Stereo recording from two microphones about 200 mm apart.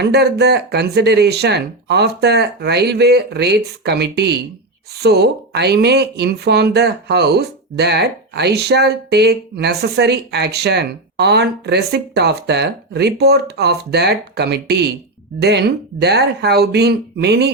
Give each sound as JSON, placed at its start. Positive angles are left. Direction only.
{"t": 0.0, "sound": "speech", "side_deg": -55}